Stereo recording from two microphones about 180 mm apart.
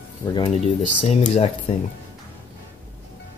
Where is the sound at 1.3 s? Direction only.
40° left (ahead or behind).